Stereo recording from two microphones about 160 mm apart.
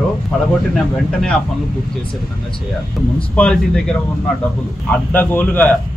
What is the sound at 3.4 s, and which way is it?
A man's voice, 5° left (ahead or behind).